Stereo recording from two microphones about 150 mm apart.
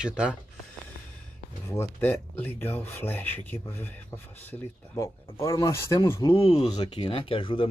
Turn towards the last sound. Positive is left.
turn(degrees=35)  # may be behind; listen again after turning